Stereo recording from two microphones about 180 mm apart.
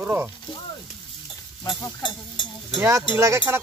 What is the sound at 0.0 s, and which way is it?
Speech, 10° right (ahead or behind).